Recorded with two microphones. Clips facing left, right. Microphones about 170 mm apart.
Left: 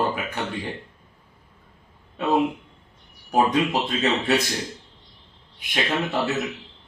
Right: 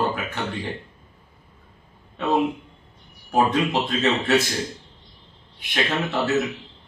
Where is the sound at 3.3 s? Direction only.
10° left (ahead or behind).